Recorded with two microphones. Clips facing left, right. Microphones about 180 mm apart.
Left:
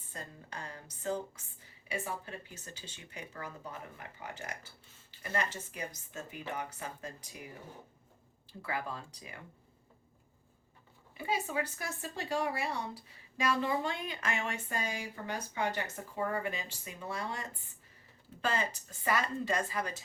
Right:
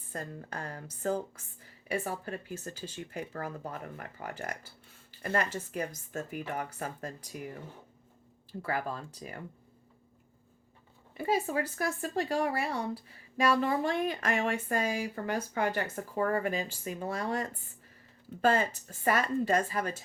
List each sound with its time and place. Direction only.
0.1 s speech: 50° right (ahead or behind)
8.6 s speech: 45° right (ahead or behind)
11.2 s speech: 40° right (ahead or behind)
12.0 s speech: 55° right (ahead or behind)